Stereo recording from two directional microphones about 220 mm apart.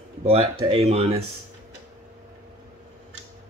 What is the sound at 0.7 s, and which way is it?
Speech, 25° right (ahead or behind).